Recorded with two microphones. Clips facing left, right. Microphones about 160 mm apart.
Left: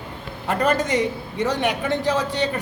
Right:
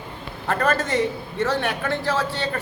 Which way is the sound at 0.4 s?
15° left (ahead or behind).